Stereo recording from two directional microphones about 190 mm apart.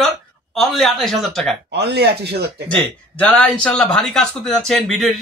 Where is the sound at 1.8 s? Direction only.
60° right (ahead or behind).